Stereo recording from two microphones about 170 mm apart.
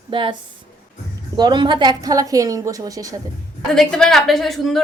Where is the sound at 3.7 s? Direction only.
5° left (ahead or behind).